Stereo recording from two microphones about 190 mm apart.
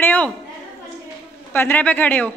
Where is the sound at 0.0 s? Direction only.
10° left (ahead or behind).